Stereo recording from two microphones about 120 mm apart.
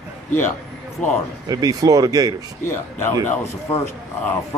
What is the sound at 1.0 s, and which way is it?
Speech, 5° left (ahead or behind).